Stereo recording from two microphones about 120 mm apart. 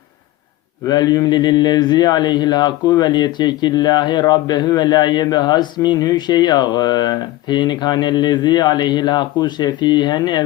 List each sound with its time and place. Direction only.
0.9 s a man's voice: 35° left (ahead or behind)